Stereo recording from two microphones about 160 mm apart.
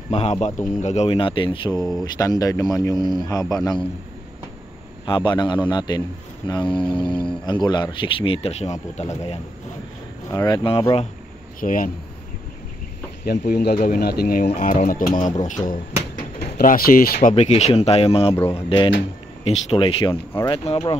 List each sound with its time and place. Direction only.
0.1 s speech: 45° left (ahead or behind)
1.8 s speech: centre (ahead or behind)
2.1 s a man's voice: 20° left (ahead or behind)
5.0 s a man's voice: 25° left (ahead or behind); by 9.1 s 45° left (ahead or behind)
10.3 s a man's voice: 30° left (ahead or behind)
11.6 s speech: 60° left (ahead or behind)
13.2 s speech: 75° left (ahead or behind)
14.5 s speech: 50° left (ahead or behind)
16.3 s speech: 70° left (ahead or behind)
17.3 s speech: 40° left (ahead or behind)